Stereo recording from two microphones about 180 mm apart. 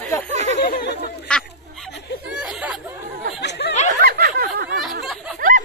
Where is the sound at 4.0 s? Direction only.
60° right (ahead or behind).